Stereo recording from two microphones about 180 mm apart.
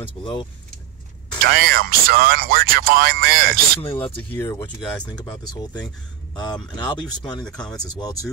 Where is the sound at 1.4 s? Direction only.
55° right (ahead or behind).